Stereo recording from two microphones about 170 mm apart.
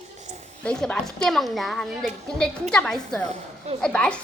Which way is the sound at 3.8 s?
5° left (ahead or behind).